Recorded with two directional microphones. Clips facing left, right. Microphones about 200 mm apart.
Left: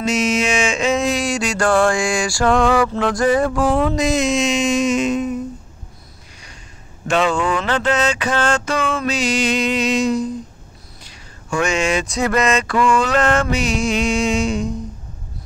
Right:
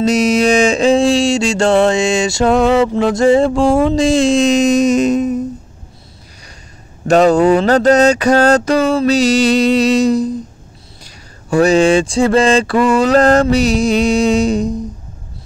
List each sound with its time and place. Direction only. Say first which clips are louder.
0.0 s a sound: right 7 dB; 35° right (ahead or behind)
3.8 s speech: right 6 dB; 30° right (ahead or behind)
7.1 s speech: right 9 dB; 40° right (ahead or behind)